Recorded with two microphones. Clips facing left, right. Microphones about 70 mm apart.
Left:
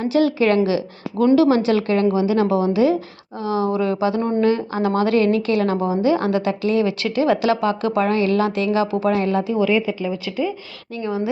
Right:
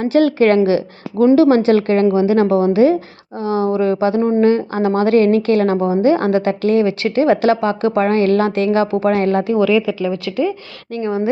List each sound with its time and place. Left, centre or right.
0.0 s a woman's voice: right
9.1 s speech: right
10.9 s a woman's voice: right